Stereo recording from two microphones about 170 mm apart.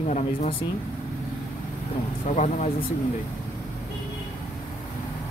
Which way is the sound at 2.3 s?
45° left (ahead or behind).